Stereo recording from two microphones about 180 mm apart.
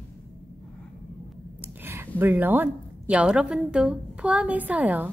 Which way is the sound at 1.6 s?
15° right (ahead or behind).